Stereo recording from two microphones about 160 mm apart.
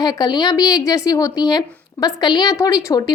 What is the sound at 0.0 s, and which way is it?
Speech, 25° left (ahead or behind).